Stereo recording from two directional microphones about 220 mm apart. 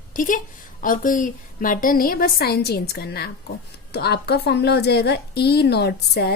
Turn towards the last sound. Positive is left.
turn(degrees=50)  # may be behind; listen again after turning